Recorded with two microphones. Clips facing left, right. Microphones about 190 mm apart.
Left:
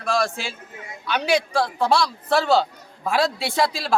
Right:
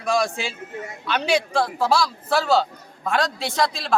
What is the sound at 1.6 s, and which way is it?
A man's voice, 5° right (ahead or behind).